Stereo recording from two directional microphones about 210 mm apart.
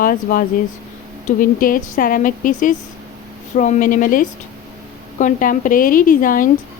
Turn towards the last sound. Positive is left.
turn(degrees=40)  # may be behind; listen again after turning